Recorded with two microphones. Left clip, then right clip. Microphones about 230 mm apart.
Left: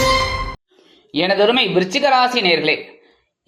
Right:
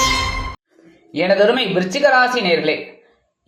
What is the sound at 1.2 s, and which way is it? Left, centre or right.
Speech, left.